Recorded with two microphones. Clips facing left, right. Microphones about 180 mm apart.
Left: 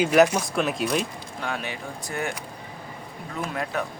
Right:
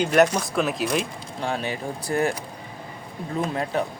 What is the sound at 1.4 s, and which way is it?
Speech, 30° right (ahead or behind).